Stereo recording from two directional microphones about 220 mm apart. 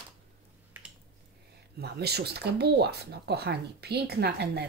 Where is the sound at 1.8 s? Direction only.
45° right (ahead or behind).